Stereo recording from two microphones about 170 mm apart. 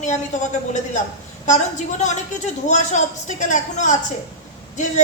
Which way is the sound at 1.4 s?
45° left (ahead or behind).